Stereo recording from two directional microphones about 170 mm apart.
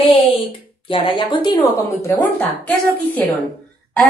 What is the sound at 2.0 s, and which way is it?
A woman's voice, 10° left (ahead or behind).